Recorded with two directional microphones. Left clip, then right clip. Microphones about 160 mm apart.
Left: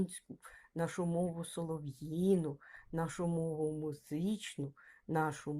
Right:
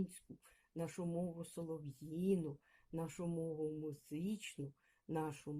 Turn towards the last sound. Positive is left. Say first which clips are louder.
# left 8 dB
turn(degrees=10)  # may be behind; listen again after turning